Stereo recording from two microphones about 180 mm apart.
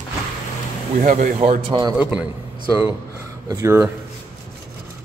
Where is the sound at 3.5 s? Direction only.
15° right (ahead or behind).